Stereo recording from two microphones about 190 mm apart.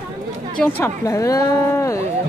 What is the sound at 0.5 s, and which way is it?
Speech, 10° left (ahead or behind).